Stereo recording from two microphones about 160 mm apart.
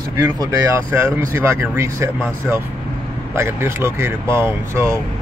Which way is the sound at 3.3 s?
15° right (ahead or behind).